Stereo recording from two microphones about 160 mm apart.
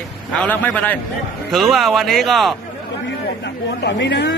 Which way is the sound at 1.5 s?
Centre (ahead or behind).